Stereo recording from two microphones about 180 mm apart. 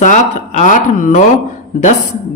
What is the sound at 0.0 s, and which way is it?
A man's voice, 40° left (ahead or behind).